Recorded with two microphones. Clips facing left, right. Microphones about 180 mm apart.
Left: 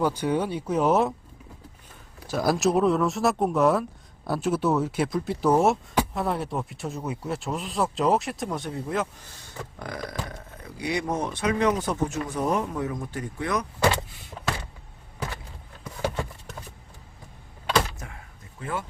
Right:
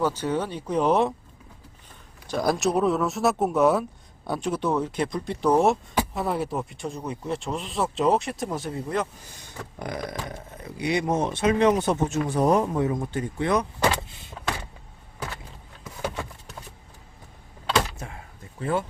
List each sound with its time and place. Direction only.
0.0 s speech: 10° left (ahead or behind)
2.2 s speech: 5° left (ahead or behind)
9.7 s speech: 20° right (ahead or behind)
18.6 s speech: 30° right (ahead or behind)